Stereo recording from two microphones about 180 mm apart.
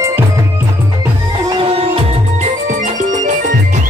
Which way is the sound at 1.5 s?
30° right (ahead or behind).